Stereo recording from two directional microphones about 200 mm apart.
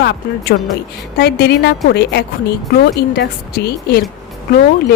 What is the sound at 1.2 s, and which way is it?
A woman's voice, 55° left (ahead or behind).